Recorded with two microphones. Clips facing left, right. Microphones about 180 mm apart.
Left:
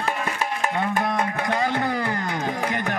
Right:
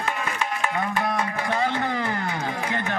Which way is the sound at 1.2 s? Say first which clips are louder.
Left 2 dB; 55° left (ahead or behind).